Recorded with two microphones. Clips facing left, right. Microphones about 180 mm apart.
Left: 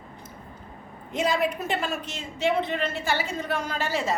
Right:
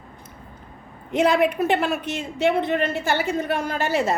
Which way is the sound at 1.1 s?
65° right (ahead or behind).